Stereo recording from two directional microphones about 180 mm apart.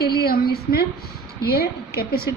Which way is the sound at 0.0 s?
60° left (ahead or behind).